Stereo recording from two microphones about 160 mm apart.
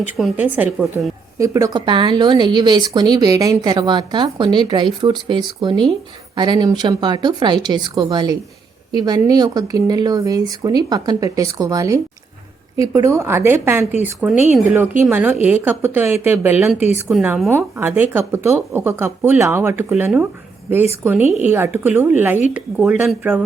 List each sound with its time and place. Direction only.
0.2 s a woman's voice: 10° right (ahead or behind)
17.5 s speech: 15° right (ahead or behind)